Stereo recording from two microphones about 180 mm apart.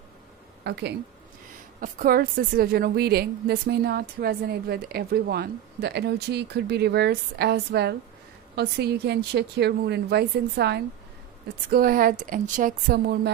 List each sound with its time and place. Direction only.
0.7 s speech: 65° right (ahead or behind)
1.8 s a woman's voice: 55° right (ahead or behind)
11.7 s speech: 55° right (ahead or behind)